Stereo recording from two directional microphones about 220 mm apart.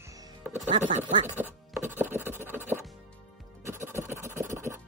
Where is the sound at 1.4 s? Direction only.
10° right (ahead or behind).